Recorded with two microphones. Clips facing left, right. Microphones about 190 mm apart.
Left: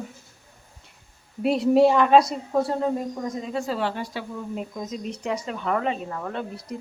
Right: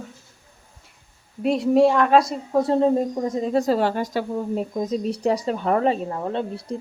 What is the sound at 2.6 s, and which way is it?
Speech, 25° right (ahead or behind).